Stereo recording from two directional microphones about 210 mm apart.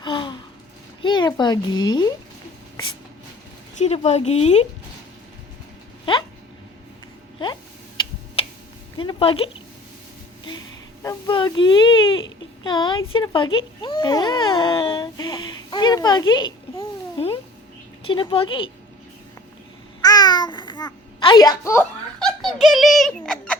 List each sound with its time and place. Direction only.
0.0 s a sound: 20° left (ahead or behind)
1.0 s speech: 20° left (ahead or behind)
3.8 s speech: 30° left (ahead or behind)
7.3 s a sound: 20° left (ahead or behind)
9.0 s speech: 25° left (ahead or behind)
11.0 s speech: 20° left (ahead or behind)
13.1 s a sound: 25° left (ahead or behind)
18.0 s speech: 25° left (ahead or behind)
20.0 s babbling: 20° left (ahead or behind); by 22.5 s centre (ahead or behind)
22.6 s speech: centre (ahead or behind)